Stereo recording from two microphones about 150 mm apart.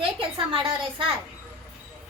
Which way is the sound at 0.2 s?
35° right (ahead or behind).